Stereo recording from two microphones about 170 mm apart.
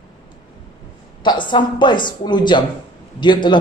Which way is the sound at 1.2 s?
25° left (ahead or behind).